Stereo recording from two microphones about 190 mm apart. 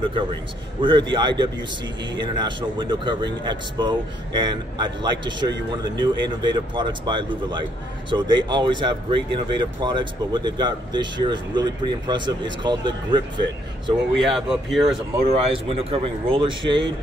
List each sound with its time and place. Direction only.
0.1 s speech: 25° right (ahead or behind)
14.1 s speech: centre (ahead or behind)
15.2 s speech: 30° right (ahead or behind)